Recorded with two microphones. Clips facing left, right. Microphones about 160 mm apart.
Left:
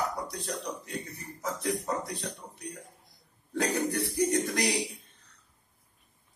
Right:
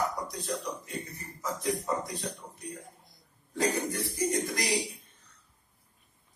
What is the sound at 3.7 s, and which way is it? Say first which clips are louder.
Speech: left 3 dB; 65° left (ahead or behind).